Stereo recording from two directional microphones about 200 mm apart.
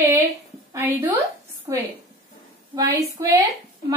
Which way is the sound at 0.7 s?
10° right (ahead or behind).